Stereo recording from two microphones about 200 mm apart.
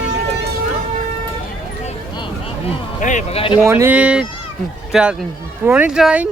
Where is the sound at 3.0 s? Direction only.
35° left (ahead or behind).